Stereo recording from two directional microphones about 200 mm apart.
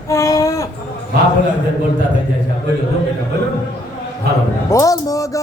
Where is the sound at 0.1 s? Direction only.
15° left (ahead or behind).